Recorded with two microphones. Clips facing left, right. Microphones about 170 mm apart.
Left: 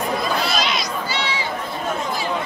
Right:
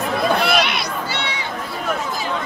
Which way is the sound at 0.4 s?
60° right (ahead or behind).